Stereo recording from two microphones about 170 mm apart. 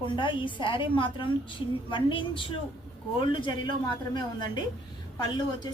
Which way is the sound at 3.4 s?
25° left (ahead or behind).